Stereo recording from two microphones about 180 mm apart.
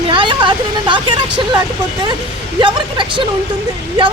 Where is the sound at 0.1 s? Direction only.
30° right (ahead or behind).